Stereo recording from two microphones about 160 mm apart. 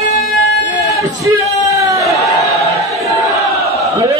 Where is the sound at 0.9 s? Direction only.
20° right (ahead or behind).